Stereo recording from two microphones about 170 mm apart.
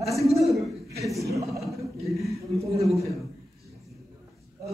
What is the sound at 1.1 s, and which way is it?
Speech, 20° right (ahead or behind).